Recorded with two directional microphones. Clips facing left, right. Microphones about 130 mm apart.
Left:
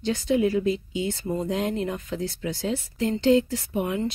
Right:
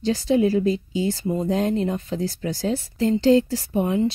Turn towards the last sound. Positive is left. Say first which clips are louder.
# right 5 dB
turn(degrees=-30)  # may be behind; listen again after turning